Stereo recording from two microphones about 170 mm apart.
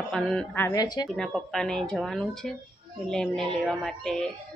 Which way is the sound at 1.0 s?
Centre (ahead or behind).